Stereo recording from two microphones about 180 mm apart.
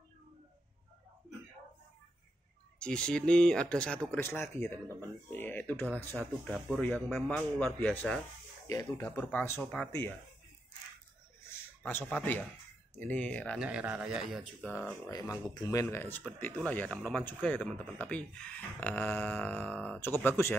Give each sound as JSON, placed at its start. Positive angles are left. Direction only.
{"t": 2.8, "sound": "speech", "side_deg": 5}
{"t": 8.6, "sound": "speech", "side_deg": 20}
{"t": 11.8, "sound": "speech", "side_deg": 10}
{"t": 13.6, "sound": "speech", "side_deg": -5}
{"t": 15.0, "sound": "speech", "side_deg": 20}